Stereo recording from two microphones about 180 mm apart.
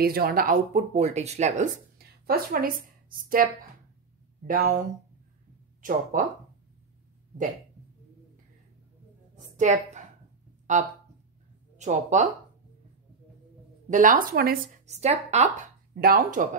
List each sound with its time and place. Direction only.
0.0 s speech: 55° right (ahead or behind)
2.0 s a woman's voice: 60° right (ahead or behind)
4.5 s speech: 55° right (ahead or behind)
5.8 s speech: 45° right (ahead or behind)
9.4 s a sound: 40° right (ahead or behind)
10.7 s speech: 45° right (ahead or behind)
13.8 s speech: 45° right (ahead or behind)
14.9 s speech: 40° right (ahead or behind)
15.9 s speech: 55° right (ahead or behind)